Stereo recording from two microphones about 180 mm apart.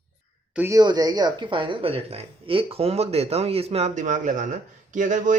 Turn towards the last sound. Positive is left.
turn(degrees=-45)  # may be behind; listen again after turning